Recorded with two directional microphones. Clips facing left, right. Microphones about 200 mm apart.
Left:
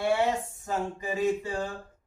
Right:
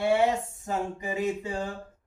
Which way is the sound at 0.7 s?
20° right (ahead or behind).